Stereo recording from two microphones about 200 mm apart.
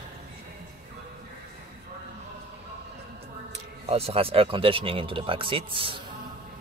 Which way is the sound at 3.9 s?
30° right (ahead or behind).